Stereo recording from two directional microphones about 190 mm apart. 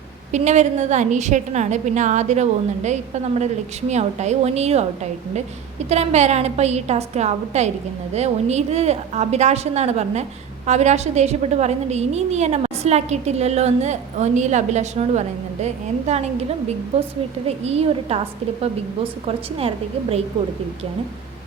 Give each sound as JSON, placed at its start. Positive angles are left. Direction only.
{"t": 0.3, "sound": "a woman's voice", "side_deg": -40}
{"t": 5.9, "sound": "a woman's voice", "side_deg": -35}
{"t": 19.2, "sound": "a woman's voice", "side_deg": -30}